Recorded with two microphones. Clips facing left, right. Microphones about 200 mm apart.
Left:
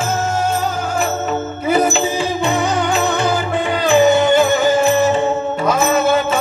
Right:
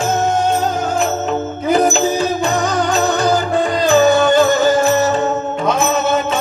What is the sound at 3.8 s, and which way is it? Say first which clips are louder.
Music: even; 15° left (ahead or behind).